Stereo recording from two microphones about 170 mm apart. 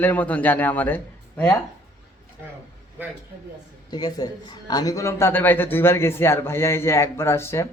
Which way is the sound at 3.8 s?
25° left (ahead or behind).